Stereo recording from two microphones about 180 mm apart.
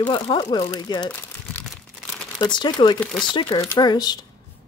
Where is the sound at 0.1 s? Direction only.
25° left (ahead or behind).